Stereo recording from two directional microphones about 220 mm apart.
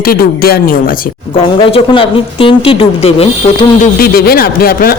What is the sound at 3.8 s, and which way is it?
Speech, 45° left (ahead or behind).